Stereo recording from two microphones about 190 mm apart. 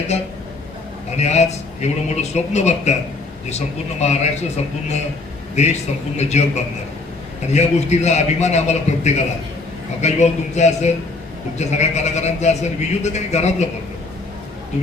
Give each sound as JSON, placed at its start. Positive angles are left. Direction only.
{"t": 0.1, "sound": "a man's voice", "side_deg": 35}
{"t": 4.0, "sound": "a man's voice", "side_deg": 35}
{"t": 7.5, "sound": "a man's voice", "side_deg": 35}